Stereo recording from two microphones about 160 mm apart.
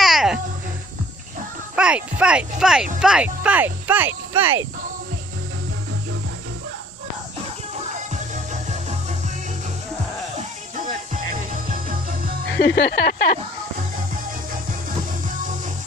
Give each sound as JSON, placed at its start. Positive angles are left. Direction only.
{"t": 0.0, "sound": "a sound", "side_deg": 0}
{"t": 1.8, "sound": "speech", "side_deg": -5}
{"t": 12.5, "sound": "speech", "side_deg": 90}